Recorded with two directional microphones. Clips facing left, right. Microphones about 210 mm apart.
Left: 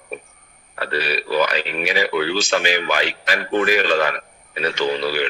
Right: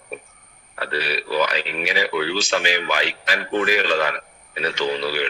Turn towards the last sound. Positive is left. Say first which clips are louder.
# left 2 dB
turn(degrees=50)  # may be behind; listen again after turning